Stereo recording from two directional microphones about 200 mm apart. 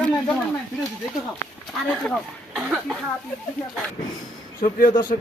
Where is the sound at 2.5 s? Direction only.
5° right (ahead or behind).